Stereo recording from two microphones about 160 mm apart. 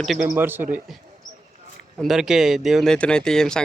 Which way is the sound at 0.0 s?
Centre (ahead or behind).